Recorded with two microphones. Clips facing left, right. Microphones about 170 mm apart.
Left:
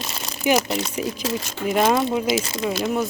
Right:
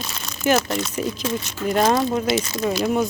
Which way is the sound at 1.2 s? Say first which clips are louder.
Right 1 dB; 35° left (ahead or behind).